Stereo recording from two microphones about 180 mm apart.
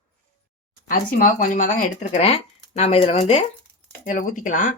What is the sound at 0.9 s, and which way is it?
Speech, 50° left (ahead or behind).